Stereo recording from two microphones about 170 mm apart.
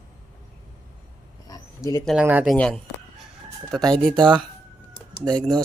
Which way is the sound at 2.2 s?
10° right (ahead or behind).